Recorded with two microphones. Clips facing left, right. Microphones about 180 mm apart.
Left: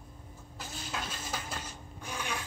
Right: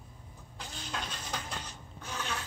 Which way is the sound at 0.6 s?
5° left (ahead or behind).